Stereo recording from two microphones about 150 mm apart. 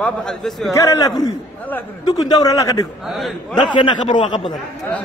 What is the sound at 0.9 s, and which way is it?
A man's voice, 25° left (ahead or behind).